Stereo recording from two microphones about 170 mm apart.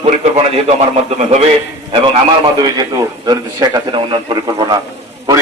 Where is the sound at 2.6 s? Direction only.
25° right (ahead or behind).